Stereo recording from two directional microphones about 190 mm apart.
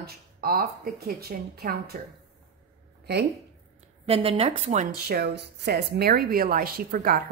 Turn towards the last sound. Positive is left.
turn(degrees=-50)  # may be behind; listen again after turning